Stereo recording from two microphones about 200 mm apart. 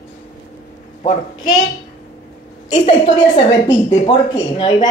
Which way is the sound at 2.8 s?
25° left (ahead or behind).